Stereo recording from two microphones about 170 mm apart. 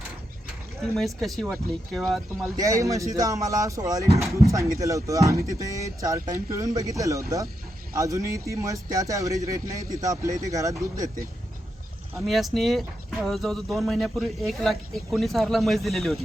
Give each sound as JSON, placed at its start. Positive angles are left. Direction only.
{"t": 0.8, "sound": "speech", "side_deg": 0}
{"t": 2.6, "sound": "speech", "side_deg": -20}
{"t": 12.1, "sound": "speech", "side_deg": 0}